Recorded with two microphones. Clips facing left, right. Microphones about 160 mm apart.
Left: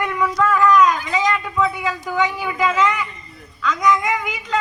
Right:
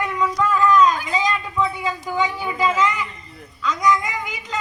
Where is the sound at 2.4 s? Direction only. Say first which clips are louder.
Left 1 dB; 25° right (ahead or behind).